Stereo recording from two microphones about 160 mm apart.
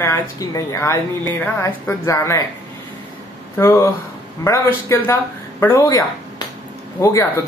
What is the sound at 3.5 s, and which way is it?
Speech, 15° left (ahead or behind).